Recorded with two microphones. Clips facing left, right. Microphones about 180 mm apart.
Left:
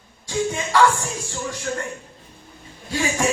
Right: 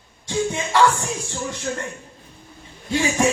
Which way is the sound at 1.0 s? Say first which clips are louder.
Right 1 dB; 20° right (ahead or behind).